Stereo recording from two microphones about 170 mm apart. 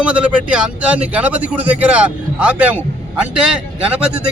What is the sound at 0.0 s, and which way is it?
A man's voice, 5° right (ahead or behind).